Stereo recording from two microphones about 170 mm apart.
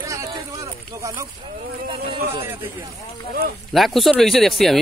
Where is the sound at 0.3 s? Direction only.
20° right (ahead or behind).